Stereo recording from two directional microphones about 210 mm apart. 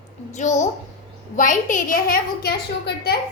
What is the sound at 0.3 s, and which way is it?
A woman's voice, 35° left (ahead or behind).